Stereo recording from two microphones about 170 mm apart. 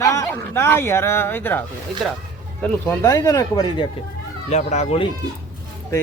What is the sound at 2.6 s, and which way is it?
Speech, 10° left (ahead or behind).